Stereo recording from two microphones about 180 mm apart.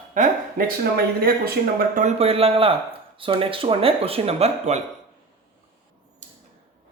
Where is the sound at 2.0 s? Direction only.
35° right (ahead or behind).